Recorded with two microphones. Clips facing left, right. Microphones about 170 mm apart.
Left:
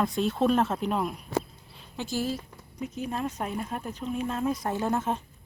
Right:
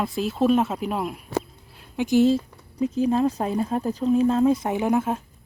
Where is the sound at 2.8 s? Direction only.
30° right (ahead or behind); by 5.2 s 10° right (ahead or behind).